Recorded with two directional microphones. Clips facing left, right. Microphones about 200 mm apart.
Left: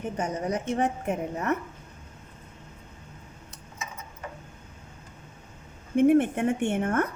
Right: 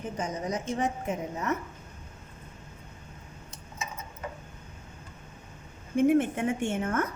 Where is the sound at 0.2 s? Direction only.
60° left (ahead or behind).